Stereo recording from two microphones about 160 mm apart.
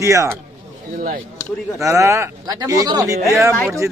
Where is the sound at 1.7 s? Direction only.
20° right (ahead or behind).